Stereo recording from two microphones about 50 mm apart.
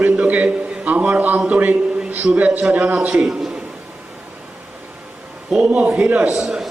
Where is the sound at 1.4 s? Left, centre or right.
Right.